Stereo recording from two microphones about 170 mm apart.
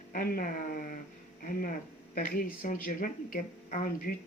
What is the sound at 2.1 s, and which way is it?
Speech, 60° left (ahead or behind).